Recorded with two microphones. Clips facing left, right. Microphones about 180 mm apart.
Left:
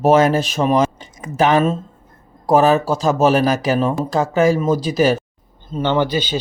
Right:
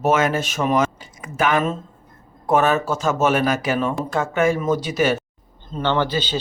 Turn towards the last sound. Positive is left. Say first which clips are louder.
# left 3 dB
turn(degrees=15)  # may be behind; listen again after turning